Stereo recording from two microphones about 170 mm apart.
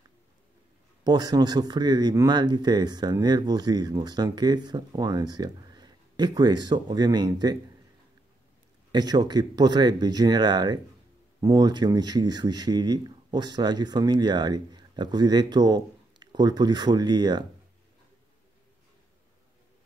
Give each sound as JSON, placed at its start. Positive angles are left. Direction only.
{"t": 1.0, "sound": "speech", "side_deg": -25}
{"t": 8.9, "sound": "speech", "side_deg": -25}